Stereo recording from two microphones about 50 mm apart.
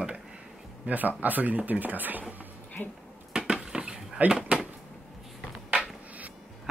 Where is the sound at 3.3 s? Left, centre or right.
Centre.